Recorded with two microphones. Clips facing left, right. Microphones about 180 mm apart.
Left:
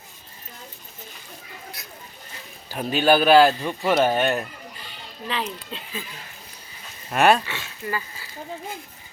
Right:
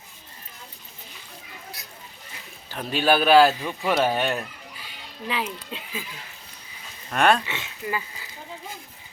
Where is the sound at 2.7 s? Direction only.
5° left (ahead or behind).